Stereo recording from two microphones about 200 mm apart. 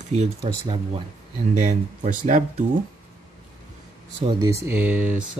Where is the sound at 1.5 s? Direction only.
35° right (ahead or behind).